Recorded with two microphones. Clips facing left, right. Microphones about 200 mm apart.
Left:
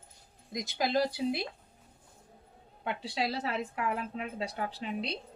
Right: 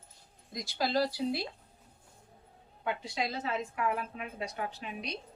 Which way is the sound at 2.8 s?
30° left (ahead or behind).